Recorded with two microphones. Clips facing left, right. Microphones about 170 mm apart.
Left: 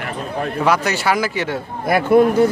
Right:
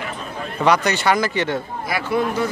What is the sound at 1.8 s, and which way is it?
Speech, 55° left (ahead or behind).